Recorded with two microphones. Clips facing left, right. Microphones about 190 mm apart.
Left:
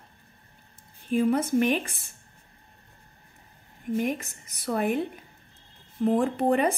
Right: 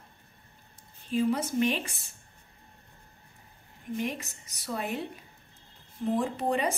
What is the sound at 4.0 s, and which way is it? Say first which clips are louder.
A woman's voice: left 4 dB; 50° left (ahead or behind).